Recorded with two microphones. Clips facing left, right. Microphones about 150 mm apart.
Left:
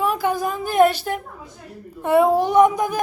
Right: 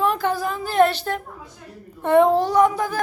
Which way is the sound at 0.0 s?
10° left (ahead or behind).